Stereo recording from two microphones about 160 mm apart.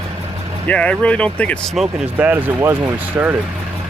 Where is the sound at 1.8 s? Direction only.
10° right (ahead or behind).